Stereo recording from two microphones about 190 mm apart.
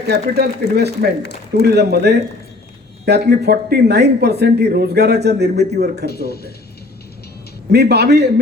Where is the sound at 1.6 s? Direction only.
60° right (ahead or behind).